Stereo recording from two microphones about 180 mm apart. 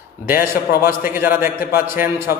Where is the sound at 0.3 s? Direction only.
15° right (ahead or behind).